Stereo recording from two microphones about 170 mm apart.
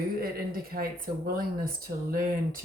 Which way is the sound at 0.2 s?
60° right (ahead or behind).